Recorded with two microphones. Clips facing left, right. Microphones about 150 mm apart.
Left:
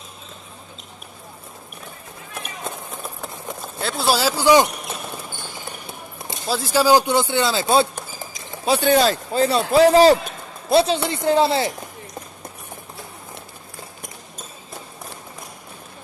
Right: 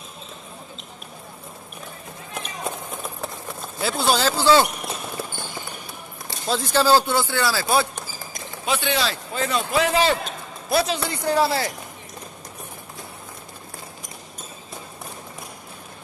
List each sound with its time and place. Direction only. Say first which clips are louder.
3.8 s speech: left 1 dB; centre (ahead or behind)
6.4 s speech: left 2 dB; 5° left (ahead or behind); by 7.9 s 25° left (ahead or behind)
8.6 s a man's voice: left 7 dB; 40° left (ahead or behind)
10.7 s speech: left 5 dB; 30° left (ahead or behind)